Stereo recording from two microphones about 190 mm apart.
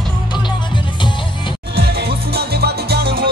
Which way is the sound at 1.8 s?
55° right (ahead or behind).